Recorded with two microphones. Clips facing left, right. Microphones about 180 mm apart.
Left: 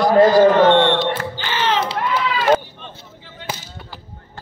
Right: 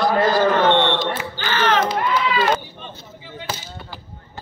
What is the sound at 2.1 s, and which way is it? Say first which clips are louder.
Run: right 1 dB; 5° left (ahead or behind).